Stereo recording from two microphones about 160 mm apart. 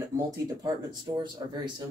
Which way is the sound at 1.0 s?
30° right (ahead or behind).